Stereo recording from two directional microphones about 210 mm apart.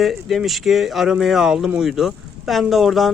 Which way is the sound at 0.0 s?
Centre (ahead or behind).